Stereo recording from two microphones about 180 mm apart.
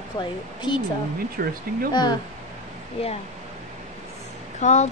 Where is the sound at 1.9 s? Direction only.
25° left (ahead or behind).